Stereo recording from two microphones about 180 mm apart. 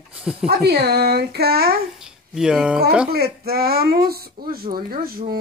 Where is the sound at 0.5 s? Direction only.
60° right (ahead or behind).